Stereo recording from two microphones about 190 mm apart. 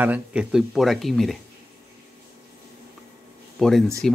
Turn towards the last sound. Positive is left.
turn(degrees=0)  # may be behind; listen again after turning